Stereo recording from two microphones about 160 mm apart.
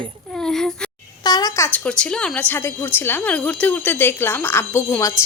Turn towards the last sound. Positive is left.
turn(degrees=15)  # may be behind; listen again after turning